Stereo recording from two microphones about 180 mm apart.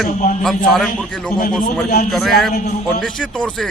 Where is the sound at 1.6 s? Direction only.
60° left (ahead or behind).